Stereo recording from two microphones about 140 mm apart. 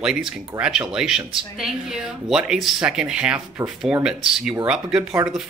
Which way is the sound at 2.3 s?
5° right (ahead or behind).